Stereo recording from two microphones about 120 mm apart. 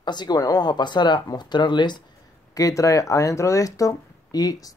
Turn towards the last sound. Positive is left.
turn(degrees=30)  # may be behind; listen again after turning